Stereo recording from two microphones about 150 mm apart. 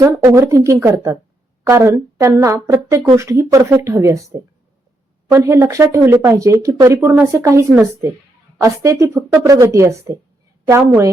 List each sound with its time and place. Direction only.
0.0 s speech: 20° right (ahead or behind)
5.3 s speech: 20° right (ahead or behind)
8.6 s speech: 20° right (ahead or behind)